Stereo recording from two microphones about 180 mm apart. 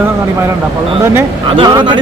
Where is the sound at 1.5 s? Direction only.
25° right (ahead or behind).